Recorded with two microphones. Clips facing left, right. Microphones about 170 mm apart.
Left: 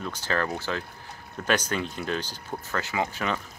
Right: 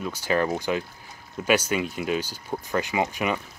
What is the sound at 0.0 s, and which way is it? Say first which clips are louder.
Speech: right 4 dB; 10° right (ahead or behind).